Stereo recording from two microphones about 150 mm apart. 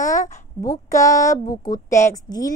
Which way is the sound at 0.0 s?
20° left (ahead or behind).